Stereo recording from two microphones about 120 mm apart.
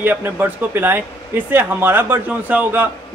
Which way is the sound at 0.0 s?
15° right (ahead or behind).